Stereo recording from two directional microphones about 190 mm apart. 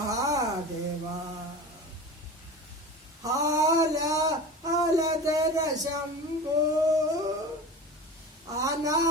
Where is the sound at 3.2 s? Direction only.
20° right (ahead or behind).